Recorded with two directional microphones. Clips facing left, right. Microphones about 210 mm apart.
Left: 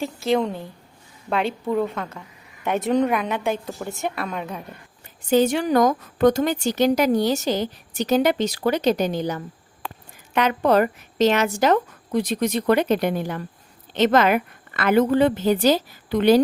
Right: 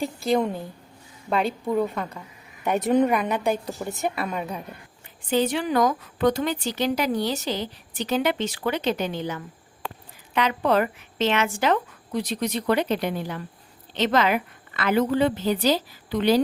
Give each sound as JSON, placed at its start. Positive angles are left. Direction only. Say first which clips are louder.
{"t": 0.0, "sound": "a woman's voice", "louder": "left 1 dB", "side_deg": 0}
{"t": 5.3, "sound": "a woman's voice", "louder": "left 5 dB", "side_deg": 45}